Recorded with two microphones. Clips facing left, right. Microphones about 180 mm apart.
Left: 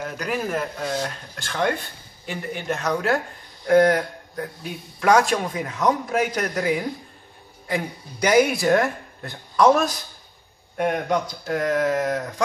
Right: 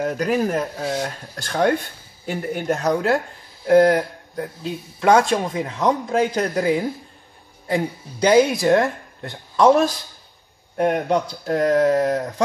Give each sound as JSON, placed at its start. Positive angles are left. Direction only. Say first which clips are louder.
{"t": 0.0, "sound": "speech", "louder": "right 7 dB", "side_deg": -40}
{"t": 0.8, "sound": "a man's voice", "louder": "right 2 dB", "side_deg": -25}
{"t": 1.3, "sound": "a man's voice", "louder": "right 5 dB", "side_deg": -40}